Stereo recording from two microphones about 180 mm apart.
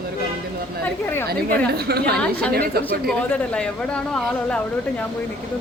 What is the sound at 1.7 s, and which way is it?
Speech, 60° right (ahead or behind).